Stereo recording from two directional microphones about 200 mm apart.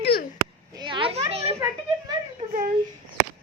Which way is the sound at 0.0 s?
50° left (ahead or behind).